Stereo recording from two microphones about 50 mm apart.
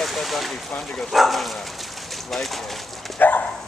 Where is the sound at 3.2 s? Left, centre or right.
Left.